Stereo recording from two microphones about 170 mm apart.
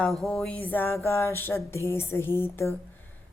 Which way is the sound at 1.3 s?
15° left (ahead or behind).